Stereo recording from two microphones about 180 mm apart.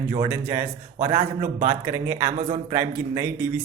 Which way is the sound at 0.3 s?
10° right (ahead or behind).